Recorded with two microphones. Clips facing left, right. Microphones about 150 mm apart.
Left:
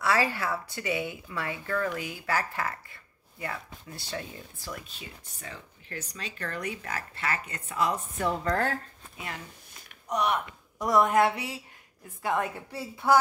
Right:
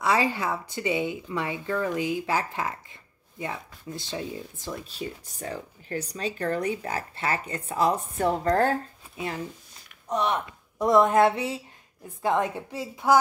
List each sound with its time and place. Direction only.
0.0 s speech: 20° right (ahead or behind)
4.9 s speech: 40° right (ahead or behind); by 13.2 s 15° right (ahead or behind)